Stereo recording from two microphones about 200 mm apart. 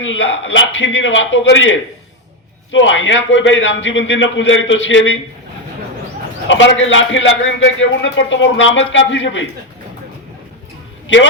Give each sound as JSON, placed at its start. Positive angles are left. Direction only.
{"t": 0.0, "sound": "a man's voice", "side_deg": 70}
{"t": 2.7, "sound": "a man's voice", "side_deg": 70}
{"t": 6.5, "sound": "a man's voice", "side_deg": 70}